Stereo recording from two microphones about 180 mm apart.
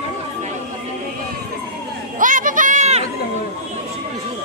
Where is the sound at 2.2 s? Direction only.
45° right (ahead or behind).